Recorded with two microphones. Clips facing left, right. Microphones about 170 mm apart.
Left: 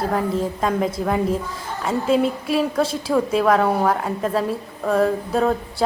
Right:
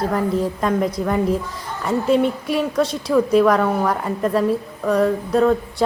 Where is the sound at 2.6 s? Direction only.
5° left (ahead or behind).